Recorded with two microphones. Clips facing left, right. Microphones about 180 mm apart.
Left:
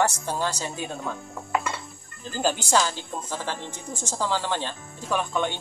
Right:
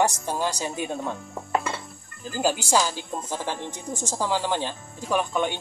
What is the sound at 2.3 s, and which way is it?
A woman's voice, 10° right (ahead or behind).